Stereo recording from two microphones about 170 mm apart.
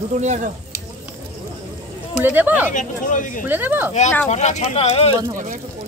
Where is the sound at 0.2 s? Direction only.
45° right (ahead or behind).